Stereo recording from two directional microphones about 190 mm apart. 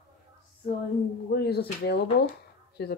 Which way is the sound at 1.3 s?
55° left (ahead or behind).